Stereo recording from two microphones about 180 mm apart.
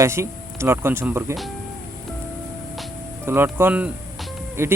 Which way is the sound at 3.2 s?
15° right (ahead or behind).